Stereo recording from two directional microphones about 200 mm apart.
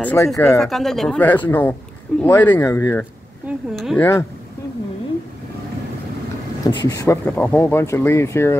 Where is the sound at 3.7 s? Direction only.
Centre (ahead or behind).